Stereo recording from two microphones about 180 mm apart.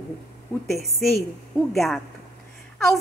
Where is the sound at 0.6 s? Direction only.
Centre (ahead or behind).